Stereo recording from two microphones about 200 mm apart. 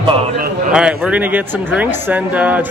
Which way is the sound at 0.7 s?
5° right (ahead or behind).